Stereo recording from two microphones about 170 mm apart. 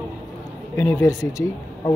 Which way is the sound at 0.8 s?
15° left (ahead or behind).